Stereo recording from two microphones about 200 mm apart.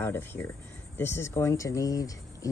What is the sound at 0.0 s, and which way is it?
Speech, 10° left (ahead or behind).